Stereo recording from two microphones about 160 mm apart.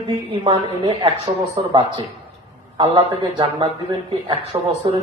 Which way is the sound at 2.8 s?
30° right (ahead or behind).